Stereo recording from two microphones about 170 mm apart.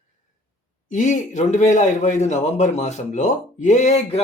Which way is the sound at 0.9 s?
50° left (ahead or behind).